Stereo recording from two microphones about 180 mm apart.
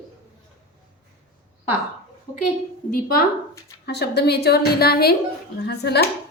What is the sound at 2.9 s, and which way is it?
A woman's voice, 55° left (ahead or behind).